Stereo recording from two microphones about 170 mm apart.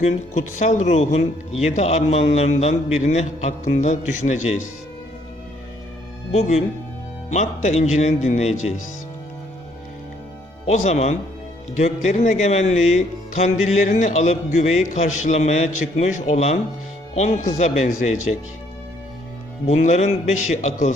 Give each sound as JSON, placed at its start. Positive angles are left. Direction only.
{"t": 0.0, "sound": "a man's voice", "side_deg": 45}
{"t": 6.3, "sound": "a man's voice", "side_deg": 40}
{"t": 10.7, "sound": "a man's voice", "side_deg": 40}
{"t": 19.6, "sound": "a man's voice", "side_deg": 40}